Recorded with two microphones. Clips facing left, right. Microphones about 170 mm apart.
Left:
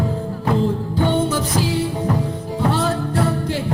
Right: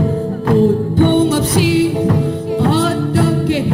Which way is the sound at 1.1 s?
70° right (ahead or behind).